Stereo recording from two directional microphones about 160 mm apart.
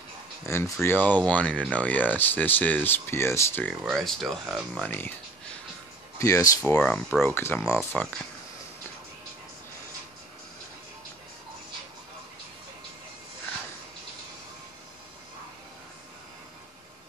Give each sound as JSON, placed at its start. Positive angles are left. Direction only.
{"t": 0.5, "sound": "speech", "side_deg": 15}
{"t": 3.8, "sound": "speech", "side_deg": 0}
{"t": 6.1, "sound": "speech", "side_deg": 20}